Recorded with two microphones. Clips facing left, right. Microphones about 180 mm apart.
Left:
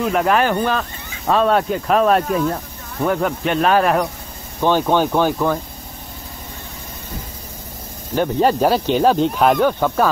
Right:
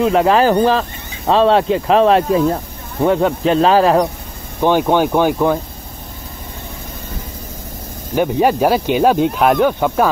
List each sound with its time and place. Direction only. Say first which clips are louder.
0.0 s speech: right 5 dB; 30° right (ahead or behind)
8.1 s speech: right 2 dB; 10° right (ahead or behind)